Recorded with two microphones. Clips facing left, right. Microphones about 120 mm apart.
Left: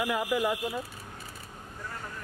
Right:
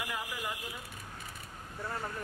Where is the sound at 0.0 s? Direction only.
70° left (ahead or behind).